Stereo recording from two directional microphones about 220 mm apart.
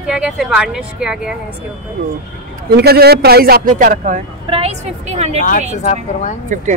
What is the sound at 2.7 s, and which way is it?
Speech, 45° right (ahead or behind).